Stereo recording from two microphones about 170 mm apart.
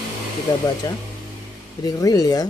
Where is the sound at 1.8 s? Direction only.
20° left (ahead or behind).